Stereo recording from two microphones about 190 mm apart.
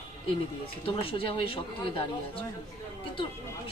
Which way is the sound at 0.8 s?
30° left (ahead or behind).